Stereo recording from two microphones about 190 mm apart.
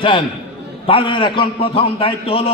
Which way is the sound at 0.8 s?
30° left (ahead or behind).